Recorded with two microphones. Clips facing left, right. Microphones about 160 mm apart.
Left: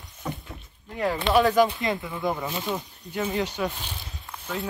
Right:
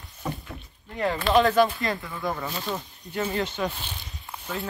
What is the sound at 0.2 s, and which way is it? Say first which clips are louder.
Rowboat: right 1 dB; 5° right (ahead or behind).